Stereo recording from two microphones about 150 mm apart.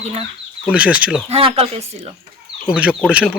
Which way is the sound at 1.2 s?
40° right (ahead or behind).